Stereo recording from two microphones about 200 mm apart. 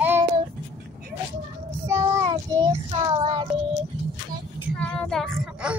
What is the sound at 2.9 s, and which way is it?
Child singing, 30° right (ahead or behind).